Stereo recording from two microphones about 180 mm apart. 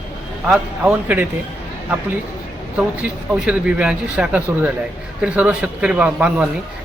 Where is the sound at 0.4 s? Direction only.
5° right (ahead or behind).